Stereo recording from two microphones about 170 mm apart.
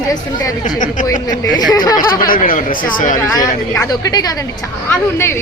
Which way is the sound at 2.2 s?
55° left (ahead or behind).